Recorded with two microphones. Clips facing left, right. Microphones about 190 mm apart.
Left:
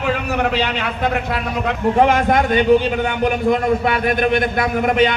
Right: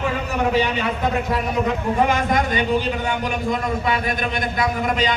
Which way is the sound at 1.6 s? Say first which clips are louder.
Left 8 dB; 65° left (ahead or behind).